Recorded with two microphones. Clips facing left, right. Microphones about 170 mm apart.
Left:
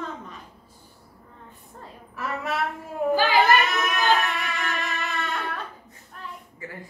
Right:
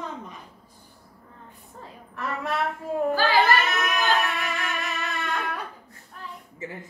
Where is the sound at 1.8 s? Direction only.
5° left (ahead or behind).